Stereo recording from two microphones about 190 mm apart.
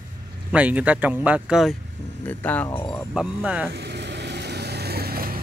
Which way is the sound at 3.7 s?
65° right (ahead or behind).